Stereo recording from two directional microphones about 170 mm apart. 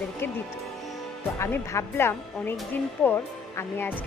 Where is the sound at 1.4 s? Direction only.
15° left (ahead or behind).